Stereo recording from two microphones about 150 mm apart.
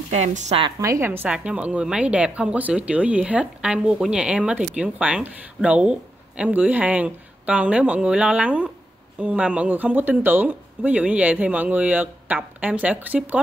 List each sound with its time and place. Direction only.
0.1 s speech: 50° right (ahead or behind)
0.7 s a woman's voice: 20° right (ahead or behind)